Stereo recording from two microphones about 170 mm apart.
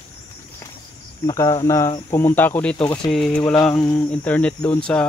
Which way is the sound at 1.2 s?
20° left (ahead or behind).